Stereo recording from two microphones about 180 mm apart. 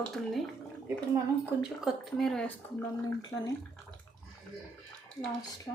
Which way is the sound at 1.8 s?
Centre (ahead or behind).